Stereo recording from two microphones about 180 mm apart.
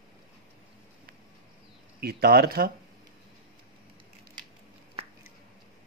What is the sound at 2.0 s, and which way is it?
Speech, 60° right (ahead or behind).